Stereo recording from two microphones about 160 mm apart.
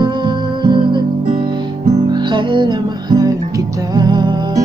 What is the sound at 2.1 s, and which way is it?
Music, 30° right (ahead or behind).